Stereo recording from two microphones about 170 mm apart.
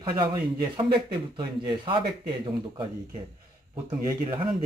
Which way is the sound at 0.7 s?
30° right (ahead or behind).